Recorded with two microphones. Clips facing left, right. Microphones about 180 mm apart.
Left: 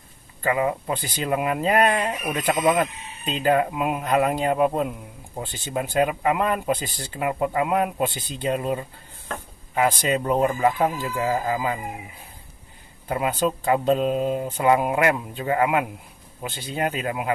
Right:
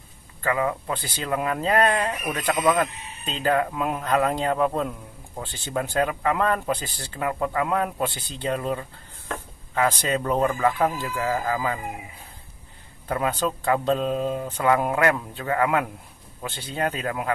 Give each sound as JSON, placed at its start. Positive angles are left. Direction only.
{"t": 0.4, "sound": "speech", "side_deg": 20}
{"t": 13.1, "sound": "speech", "side_deg": 15}